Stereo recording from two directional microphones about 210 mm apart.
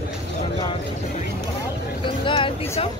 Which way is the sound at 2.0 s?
25° left (ahead or behind).